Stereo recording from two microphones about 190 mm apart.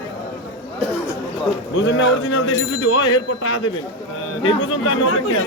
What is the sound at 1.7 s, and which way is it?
Speech, 80° left.